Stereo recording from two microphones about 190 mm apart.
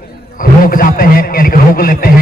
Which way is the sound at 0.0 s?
50° left (ahead or behind).